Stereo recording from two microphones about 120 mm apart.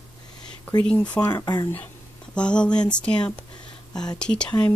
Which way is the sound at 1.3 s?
35° left (ahead or behind).